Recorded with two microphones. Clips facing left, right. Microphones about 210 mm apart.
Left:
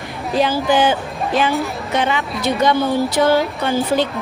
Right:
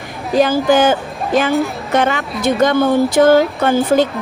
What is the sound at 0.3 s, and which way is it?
A woman's voice, 45° right (ahead or behind).